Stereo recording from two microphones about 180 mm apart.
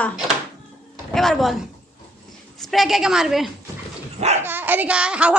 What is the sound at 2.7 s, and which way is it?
A woman's voice, centre (ahead or behind).